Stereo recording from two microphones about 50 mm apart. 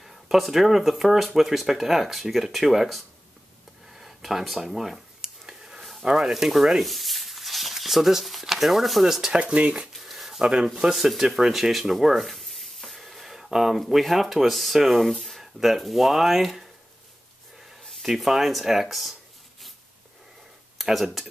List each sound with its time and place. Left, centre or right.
0.0 s speech: centre
3.9 s a sound: centre
6.1 s speech: centre
9.3 s speech: right
9.9 s speech: centre
18.0 s speech: centre
20.7 s speech: centre